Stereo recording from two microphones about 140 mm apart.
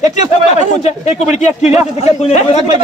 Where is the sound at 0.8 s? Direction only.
55° left (ahead or behind).